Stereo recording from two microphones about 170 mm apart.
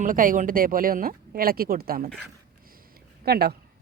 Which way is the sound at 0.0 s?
55° right (ahead or behind).